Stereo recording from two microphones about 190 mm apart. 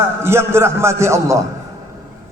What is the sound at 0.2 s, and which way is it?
A man's voice, 15° right (ahead or behind).